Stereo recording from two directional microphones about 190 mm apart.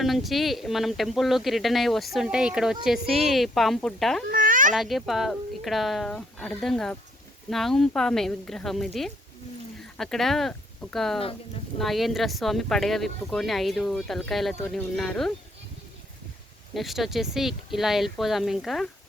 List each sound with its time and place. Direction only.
0.0 s speech: centre (ahead or behind)
4.3 s a sound: 45° right (ahead or behind)
4.7 s speech: centre (ahead or behind)
10.0 s speech: centre (ahead or behind)
16.7 s speech: centre (ahead or behind)